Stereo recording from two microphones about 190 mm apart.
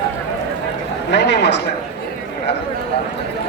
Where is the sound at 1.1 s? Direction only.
65° left (ahead or behind).